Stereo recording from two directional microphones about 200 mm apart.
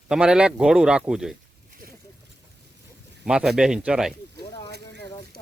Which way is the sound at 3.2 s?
5° right (ahead or behind).